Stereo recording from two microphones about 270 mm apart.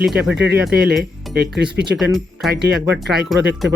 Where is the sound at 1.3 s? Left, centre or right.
Right.